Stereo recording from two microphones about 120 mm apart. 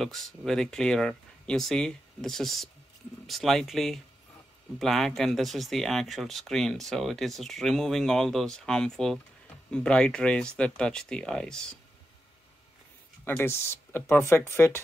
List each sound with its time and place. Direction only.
0.0 s speech: centre (ahead or behind)
13.2 s speech: 20° left (ahead or behind)